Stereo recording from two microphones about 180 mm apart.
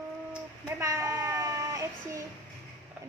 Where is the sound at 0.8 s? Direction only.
20° right (ahead or behind).